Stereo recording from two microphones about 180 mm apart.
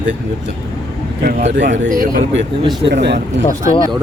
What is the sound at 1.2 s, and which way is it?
A man's voice, 50° right (ahead or behind).